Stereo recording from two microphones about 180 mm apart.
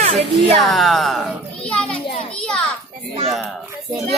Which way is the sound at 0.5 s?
Centre (ahead or behind).